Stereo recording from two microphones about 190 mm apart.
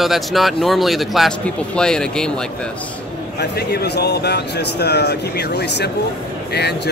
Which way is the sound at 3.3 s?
60° left (ahead or behind).